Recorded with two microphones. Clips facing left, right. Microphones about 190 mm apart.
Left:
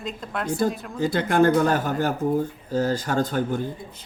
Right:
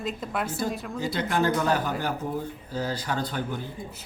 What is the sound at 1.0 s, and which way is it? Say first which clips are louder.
Speech: left 7 dB; 50° left (ahead or behind).